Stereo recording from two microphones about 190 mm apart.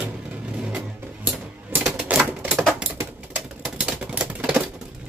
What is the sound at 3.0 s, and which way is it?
Typewriter, 10° right (ahead or behind).